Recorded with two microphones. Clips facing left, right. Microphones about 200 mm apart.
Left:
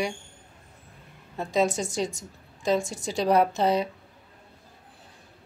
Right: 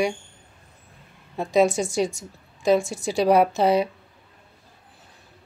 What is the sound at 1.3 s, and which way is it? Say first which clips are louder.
A woman's voice: right 5 dB; 10° right (ahead or behind).